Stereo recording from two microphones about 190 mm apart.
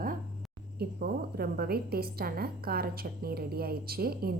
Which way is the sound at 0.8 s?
55° right (ahead or behind).